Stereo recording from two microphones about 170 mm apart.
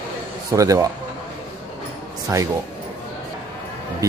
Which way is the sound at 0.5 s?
20° right (ahead or behind).